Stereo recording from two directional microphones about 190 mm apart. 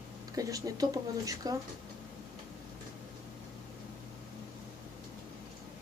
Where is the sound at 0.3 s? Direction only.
20° right (ahead or behind).